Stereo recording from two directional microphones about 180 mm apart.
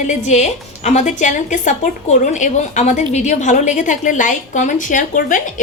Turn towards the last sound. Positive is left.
turn(degrees=45)  # may be behind; listen again after turning